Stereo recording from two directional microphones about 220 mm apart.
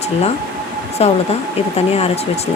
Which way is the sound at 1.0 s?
25° left (ahead or behind).